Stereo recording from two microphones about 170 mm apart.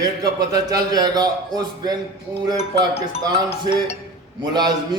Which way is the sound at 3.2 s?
25° right (ahead or behind).